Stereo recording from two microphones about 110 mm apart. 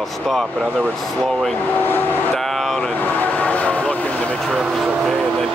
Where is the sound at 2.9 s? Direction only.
15° left (ahead or behind).